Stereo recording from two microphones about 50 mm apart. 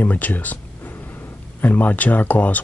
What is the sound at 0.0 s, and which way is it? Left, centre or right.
Speech, left.